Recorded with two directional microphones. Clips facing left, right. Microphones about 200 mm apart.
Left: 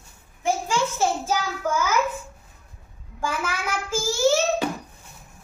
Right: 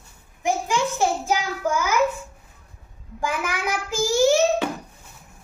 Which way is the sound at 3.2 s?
15° right (ahead or behind).